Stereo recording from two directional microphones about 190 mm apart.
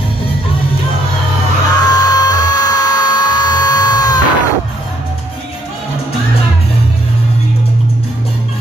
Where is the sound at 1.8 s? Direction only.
20° left (ahead or behind).